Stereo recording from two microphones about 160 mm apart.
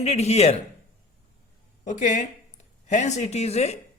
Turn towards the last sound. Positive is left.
turn(degrees=40)  # may be behind; listen again after turning